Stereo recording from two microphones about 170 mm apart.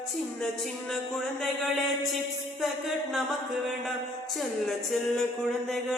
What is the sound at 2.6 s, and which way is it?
Music, centre (ahead or behind).